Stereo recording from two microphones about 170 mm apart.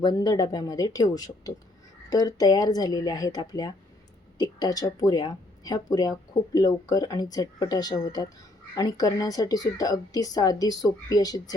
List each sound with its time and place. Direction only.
0.0 s speech: 25° left (ahead or behind)